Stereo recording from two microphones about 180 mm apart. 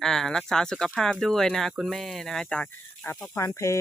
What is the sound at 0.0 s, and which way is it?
Speech, 5° left (ahead or behind).